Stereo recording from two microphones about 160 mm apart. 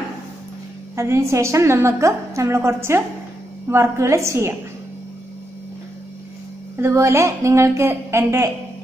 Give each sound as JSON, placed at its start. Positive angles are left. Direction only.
{"t": 0.9, "sound": "a woman's voice", "side_deg": -15}
{"t": 6.8, "sound": "a woman's voice", "side_deg": -15}